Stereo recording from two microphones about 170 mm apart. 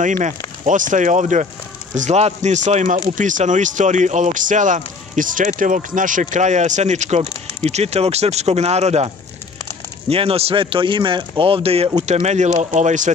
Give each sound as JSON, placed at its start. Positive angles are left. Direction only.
{"t": 0.0, "sound": "speech", "side_deg": -45}